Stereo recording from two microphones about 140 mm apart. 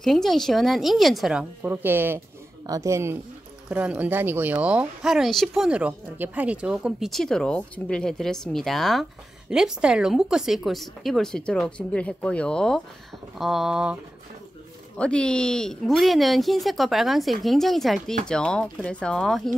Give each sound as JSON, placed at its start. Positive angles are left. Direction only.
{"t": 0.0, "sound": "speech", "side_deg": 0}
{"t": 15.0, "sound": "speech", "side_deg": 5}